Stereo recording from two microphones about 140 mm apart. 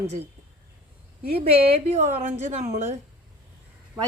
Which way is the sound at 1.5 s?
45° right (ahead or behind).